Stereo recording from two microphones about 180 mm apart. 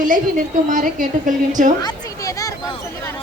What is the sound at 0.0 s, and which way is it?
A woman's voice, 45° right (ahead or behind).